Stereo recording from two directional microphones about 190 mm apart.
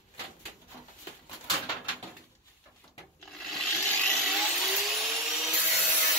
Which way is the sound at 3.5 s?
5° left (ahead or behind).